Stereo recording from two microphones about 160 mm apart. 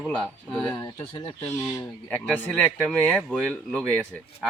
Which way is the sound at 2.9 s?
5° left (ahead or behind).